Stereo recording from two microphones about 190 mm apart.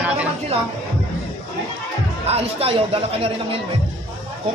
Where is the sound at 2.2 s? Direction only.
30° right (ahead or behind).